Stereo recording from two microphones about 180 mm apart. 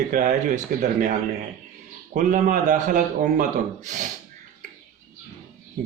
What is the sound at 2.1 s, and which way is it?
Speech, 45° right (ahead or behind).